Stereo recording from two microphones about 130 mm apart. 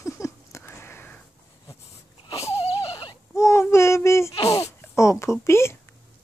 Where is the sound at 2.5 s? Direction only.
25° left (ahead or behind).